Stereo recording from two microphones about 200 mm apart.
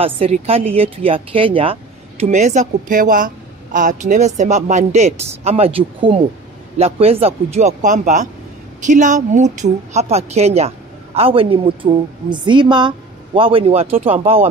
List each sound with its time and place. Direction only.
0.0 s speech: 30° right (ahead or behind)